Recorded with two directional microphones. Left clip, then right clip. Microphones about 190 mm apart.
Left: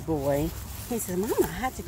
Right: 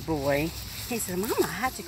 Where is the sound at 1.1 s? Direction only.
20° left (ahead or behind).